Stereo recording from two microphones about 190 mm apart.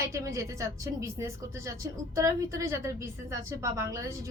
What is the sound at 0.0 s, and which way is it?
A woman's voice, 15° right (ahead or behind).